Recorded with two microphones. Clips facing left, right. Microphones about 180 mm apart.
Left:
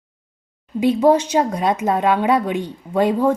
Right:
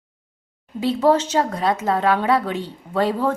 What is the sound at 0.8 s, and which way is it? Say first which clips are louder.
A woman's voice: left 3 dB; 15° left (ahead or behind).